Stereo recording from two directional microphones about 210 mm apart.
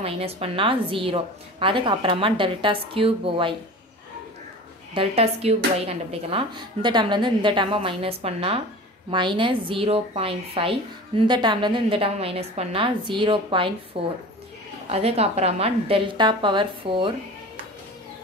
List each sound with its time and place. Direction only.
0.0 s a woman's voice: 30° right (ahead or behind)
4.9 s a woman's voice: 30° right (ahead or behind)